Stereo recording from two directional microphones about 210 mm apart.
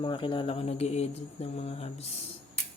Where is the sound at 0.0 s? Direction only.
20° left (ahead or behind).